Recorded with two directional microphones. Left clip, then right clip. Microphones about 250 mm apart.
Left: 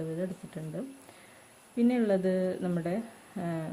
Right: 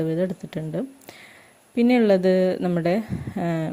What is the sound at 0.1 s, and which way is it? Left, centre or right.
Speech, right.